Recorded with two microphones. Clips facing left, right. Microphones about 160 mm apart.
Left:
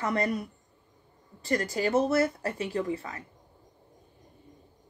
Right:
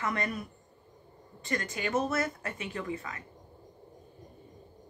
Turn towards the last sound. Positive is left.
turn(degrees=30)  # may be behind; listen again after turning